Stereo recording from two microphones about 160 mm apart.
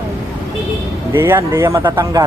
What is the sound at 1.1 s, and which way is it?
Speech, 15° right (ahead or behind).